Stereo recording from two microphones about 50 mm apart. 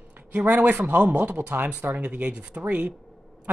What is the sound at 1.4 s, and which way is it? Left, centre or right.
Speech, right.